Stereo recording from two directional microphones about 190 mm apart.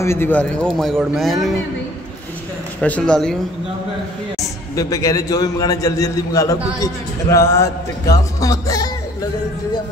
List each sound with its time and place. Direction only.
0.0 s a man's voice: 15° left (ahead or behind)
2.8 s speech: 5° left (ahead or behind)
4.7 s a man's voice: 20° left (ahead or behind)